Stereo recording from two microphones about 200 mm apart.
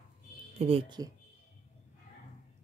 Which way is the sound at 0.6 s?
30° right (ahead or behind).